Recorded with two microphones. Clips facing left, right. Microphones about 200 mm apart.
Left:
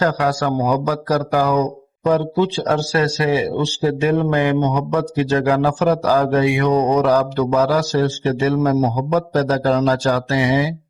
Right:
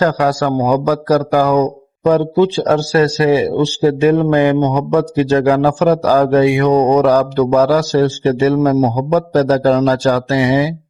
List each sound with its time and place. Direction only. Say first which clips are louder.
0.2 s a man's voice: right 4 dB; 45° right (ahead or behind)